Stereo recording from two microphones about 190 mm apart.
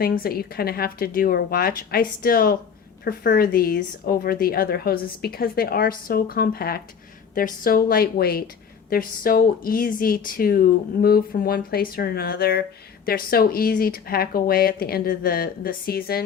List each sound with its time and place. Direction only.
0.0 s a woman's voice: 50° left (ahead or behind)